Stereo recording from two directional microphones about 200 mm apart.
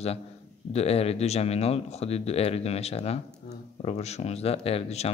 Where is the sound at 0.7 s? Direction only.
30° left (ahead or behind).